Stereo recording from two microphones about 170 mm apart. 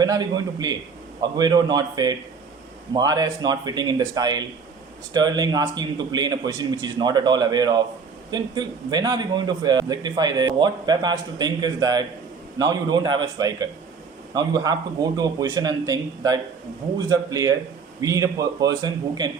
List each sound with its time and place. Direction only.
0.0 s a man's voice: 25° right (ahead or behind)